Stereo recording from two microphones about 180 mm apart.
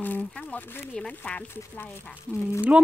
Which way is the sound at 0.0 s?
10° left (ahead or behind).